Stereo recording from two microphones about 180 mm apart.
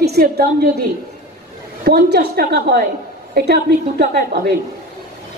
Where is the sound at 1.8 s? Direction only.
65° right (ahead or behind).